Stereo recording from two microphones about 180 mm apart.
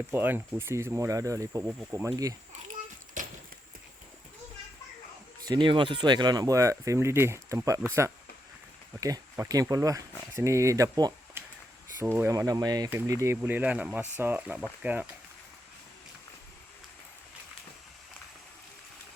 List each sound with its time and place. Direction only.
0.1 s speech: 10° right (ahead or behind)
5.5 s speech: 25° right (ahead or behind)
9.0 s speech: 20° right (ahead or behind)